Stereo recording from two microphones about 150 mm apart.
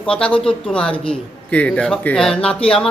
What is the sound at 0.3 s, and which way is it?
Speech, 35° left (ahead or behind).